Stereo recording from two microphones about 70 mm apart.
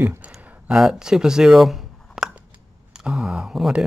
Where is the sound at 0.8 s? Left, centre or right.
Centre.